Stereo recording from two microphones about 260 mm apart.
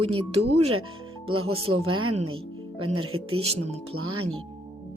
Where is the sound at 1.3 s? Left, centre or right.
Right.